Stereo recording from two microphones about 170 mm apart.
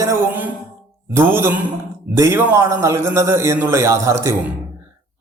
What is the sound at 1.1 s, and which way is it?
A man's voice, 15° right (ahead or behind).